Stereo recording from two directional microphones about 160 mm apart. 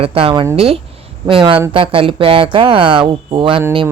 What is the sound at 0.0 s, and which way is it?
Speech, 35° right (ahead or behind).